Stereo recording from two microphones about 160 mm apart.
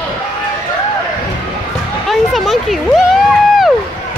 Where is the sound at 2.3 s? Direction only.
Centre (ahead or behind).